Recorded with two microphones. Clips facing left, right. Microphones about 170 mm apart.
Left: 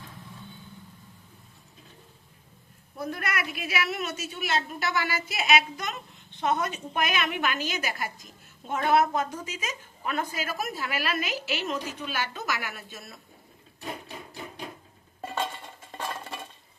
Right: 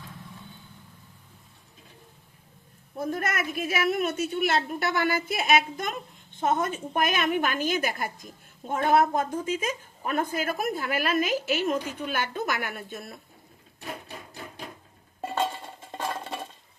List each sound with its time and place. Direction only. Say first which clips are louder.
3.0 s a woman's voice: right 3 dB; 45° right (ahead or behind)